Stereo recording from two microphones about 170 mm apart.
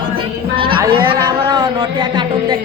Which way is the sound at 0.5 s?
30° right (ahead or behind).